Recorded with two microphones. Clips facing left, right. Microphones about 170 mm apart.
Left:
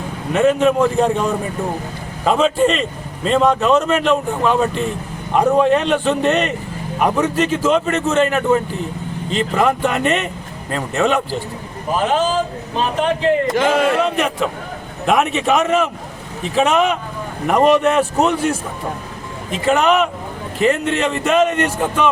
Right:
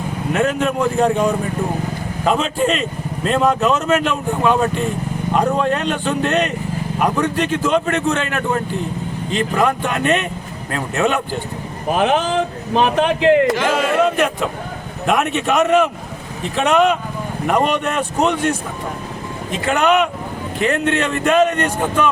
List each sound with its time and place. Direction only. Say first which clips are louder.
0.3 s speech: left 5 dB; centre (ahead or behind)
2.2 s speech: left 3 dB; centre (ahead or behind)
11.9 s speech: even; 70° right (ahead or behind)
14.0 s a man's voice: right 1 dB; centre (ahead or behind)
19.6 s speech: left 1 dB; centre (ahead or behind)